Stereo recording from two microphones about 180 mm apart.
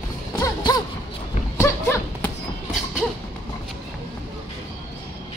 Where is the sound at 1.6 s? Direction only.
15° left (ahead or behind).